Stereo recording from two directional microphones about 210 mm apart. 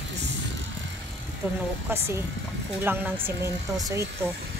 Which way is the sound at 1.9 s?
10° right (ahead or behind).